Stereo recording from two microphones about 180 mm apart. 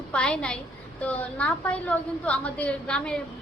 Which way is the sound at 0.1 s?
5° left (ahead or behind).